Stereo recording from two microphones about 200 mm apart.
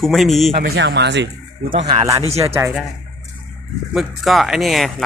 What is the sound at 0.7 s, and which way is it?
Speech, 60° right (ahead or behind).